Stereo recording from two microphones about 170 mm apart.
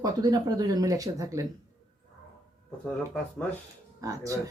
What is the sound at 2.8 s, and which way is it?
Speech, 5° left (ahead or behind).